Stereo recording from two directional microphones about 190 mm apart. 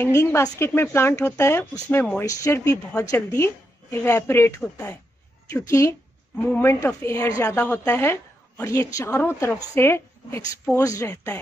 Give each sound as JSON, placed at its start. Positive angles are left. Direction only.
{"t": 0.0, "sound": "a woman's voice", "side_deg": 15}